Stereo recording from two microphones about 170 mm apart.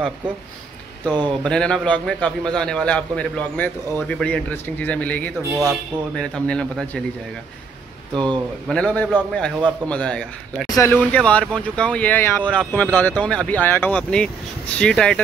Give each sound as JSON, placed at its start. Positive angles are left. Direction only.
{"t": 1.4, "sound": "a man's voice", "side_deg": 5}
{"t": 8.1, "sound": "speech", "side_deg": -25}
{"t": 8.6, "sound": "a man's voice", "side_deg": 5}